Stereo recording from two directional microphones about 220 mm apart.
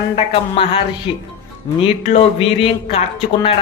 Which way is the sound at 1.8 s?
25° left (ahead or behind).